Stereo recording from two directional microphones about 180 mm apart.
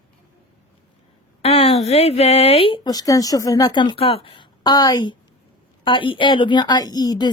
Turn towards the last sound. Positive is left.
turn(degrees=20)  # may be behind; listen again after turning